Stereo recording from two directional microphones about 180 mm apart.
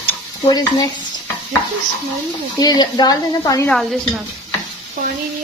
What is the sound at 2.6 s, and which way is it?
Speech, 20° left (ahead or behind).